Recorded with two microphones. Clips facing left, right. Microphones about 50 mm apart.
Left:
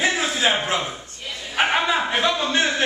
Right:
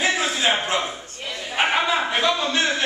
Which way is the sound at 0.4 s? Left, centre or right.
Centre.